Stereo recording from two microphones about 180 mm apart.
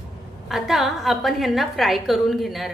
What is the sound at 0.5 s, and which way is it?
A woman's voice, centre (ahead or behind).